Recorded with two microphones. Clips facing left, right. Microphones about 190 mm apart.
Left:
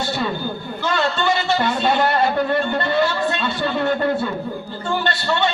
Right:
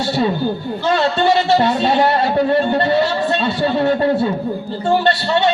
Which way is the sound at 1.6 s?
50° left (ahead or behind).